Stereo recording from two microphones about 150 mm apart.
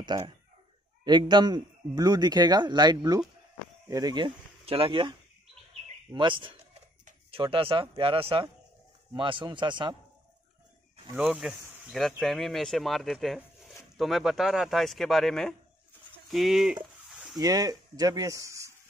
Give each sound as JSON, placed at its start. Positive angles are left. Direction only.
{"t": 0.1, "sound": "a man's voice", "side_deg": -30}
{"t": 6.1, "sound": "speech", "side_deg": -35}
{"t": 11.1, "sound": "speech", "side_deg": -5}
{"t": 17.1, "sound": "a sound", "side_deg": 0}
{"t": 17.4, "sound": "a man's voice", "side_deg": -25}